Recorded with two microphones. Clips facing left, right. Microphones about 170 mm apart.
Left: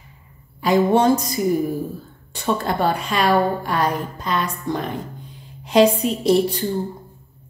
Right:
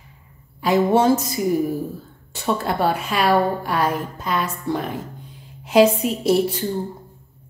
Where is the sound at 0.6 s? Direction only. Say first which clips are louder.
Left 1 dB; 5° right (ahead or behind).